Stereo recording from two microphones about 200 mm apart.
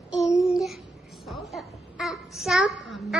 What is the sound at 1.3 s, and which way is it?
A child's voice, centre (ahead or behind).